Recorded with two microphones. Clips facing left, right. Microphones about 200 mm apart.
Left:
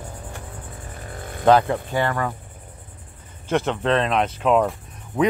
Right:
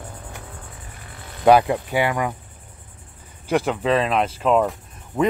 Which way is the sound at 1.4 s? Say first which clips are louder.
Right 2 dB; 10° right (ahead or behind).